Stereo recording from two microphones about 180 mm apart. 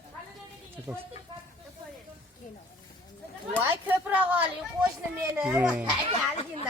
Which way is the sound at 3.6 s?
10° right (ahead or behind).